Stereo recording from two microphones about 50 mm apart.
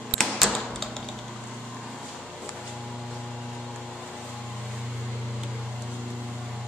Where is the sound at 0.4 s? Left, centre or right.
Centre.